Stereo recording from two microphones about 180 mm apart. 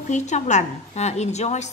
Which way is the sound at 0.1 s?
40° left (ahead or behind).